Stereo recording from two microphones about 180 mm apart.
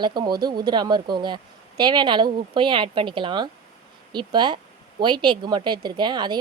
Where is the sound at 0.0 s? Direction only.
25° right (ahead or behind).